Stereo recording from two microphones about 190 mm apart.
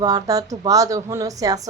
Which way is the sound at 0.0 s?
20° right (ahead or behind).